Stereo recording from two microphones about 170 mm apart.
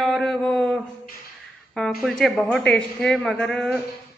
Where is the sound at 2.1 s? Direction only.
Centre (ahead or behind).